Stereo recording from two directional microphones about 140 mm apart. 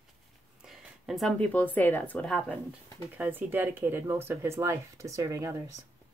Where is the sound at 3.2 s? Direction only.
15° right (ahead or behind).